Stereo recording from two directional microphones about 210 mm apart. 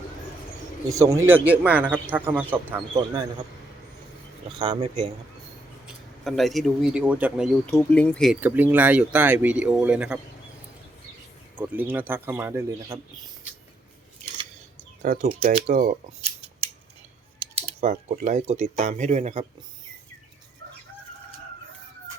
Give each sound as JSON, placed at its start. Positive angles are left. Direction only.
{"t": 0.9, "sound": "speech", "side_deg": -15}
{"t": 4.6, "sound": "speech", "side_deg": -20}
{"t": 5.8, "sound": "speech", "side_deg": 0}
{"t": 7.9, "sound": "speech", "side_deg": 5}
{"t": 8.4, "sound": "speech", "side_deg": -10}
{"t": 11.5, "sound": "speech", "side_deg": -10}
{"t": 15.0, "sound": "speech", "side_deg": -40}
{"t": 15.3, "sound": "speech", "side_deg": -30}
{"t": 17.5, "sound": "speech", "side_deg": -30}